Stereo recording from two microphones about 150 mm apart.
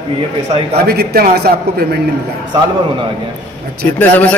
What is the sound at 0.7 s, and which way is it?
A man's voice, 90° right.